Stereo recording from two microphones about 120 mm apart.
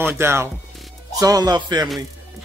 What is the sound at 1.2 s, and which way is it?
Speech, 30° right (ahead or behind).